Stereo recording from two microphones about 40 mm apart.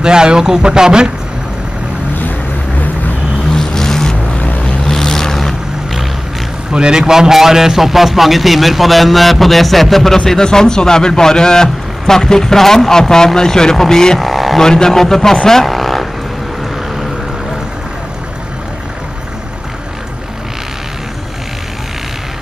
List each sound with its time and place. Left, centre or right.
0.0 s speech: centre
3.5 s vehicle: centre
6.7 s a man's voice: right; by 14.2 s centre
14.2 s a sound: centre
14.6 s a man's voice: centre
15.3 s vehicle: centre